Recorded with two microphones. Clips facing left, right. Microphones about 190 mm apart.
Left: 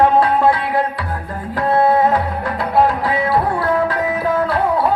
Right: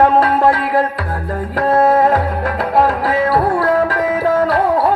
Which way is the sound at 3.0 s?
40° right (ahead or behind).